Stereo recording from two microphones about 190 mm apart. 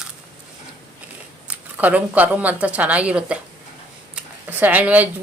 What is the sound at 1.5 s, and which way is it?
Speech, 5° right (ahead or behind).